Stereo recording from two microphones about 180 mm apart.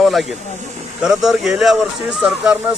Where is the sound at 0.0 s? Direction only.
Centre (ahead or behind).